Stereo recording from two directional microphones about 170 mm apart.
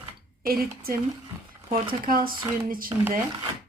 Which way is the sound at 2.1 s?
55° right (ahead or behind).